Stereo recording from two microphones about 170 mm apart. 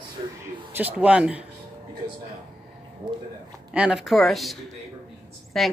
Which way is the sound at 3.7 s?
5° right (ahead or behind).